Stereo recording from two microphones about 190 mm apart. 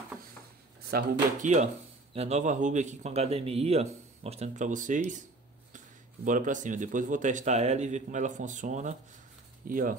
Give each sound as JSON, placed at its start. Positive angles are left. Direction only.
{"t": 0.8, "sound": "speech", "side_deg": -45}
{"t": 6.2, "sound": "speech", "side_deg": -45}